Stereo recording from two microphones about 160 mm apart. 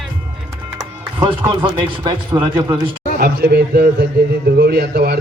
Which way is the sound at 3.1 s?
85° right.